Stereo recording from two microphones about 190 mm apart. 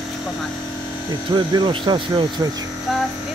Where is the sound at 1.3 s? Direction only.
25° right (ahead or behind).